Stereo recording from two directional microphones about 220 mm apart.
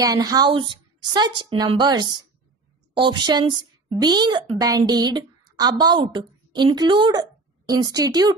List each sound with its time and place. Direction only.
0.0 s a woman's voice: 15° right (ahead or behind)